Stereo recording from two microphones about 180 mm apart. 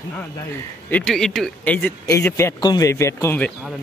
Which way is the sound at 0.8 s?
5° left (ahead or behind).